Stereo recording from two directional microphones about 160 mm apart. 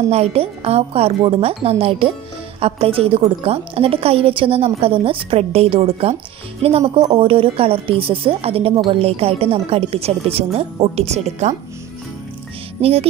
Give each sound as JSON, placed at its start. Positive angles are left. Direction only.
{"t": 0.1, "sound": "speech", "side_deg": -40}